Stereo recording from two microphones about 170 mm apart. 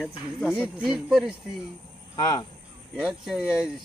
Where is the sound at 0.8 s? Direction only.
5° right (ahead or behind).